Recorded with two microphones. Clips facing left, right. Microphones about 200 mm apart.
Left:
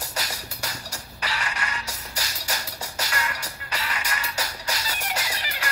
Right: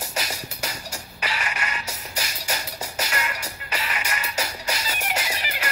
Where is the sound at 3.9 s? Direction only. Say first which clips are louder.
Right 1 dB; 25° right (ahead or behind).